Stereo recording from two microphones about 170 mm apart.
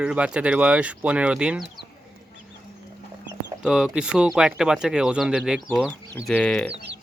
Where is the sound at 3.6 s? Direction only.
5° right (ahead or behind).